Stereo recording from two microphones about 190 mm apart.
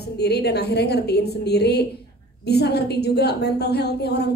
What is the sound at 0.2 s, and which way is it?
A woman's voice, 60° left (ahead or behind).